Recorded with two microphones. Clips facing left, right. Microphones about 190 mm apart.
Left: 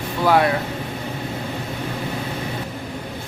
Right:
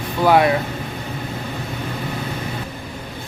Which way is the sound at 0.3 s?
15° right (ahead or behind).